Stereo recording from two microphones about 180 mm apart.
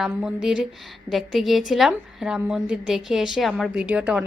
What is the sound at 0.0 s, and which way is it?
A woman's voice, 5° right (ahead or behind).